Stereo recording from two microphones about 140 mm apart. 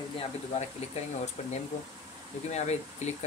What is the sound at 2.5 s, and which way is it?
Speech, 50° left (ahead or behind).